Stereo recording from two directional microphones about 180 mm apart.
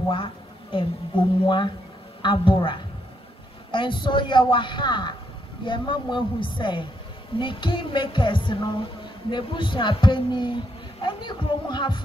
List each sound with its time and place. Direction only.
0.1 s a woman's voice: 30° left (ahead or behind)